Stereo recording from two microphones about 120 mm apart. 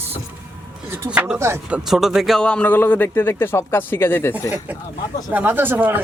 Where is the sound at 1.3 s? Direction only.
20° right (ahead or behind).